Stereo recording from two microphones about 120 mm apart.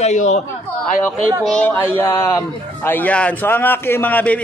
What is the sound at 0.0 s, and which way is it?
Speech, 75° left (ahead or behind).